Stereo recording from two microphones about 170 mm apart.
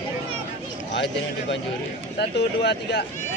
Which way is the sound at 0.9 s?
90° left.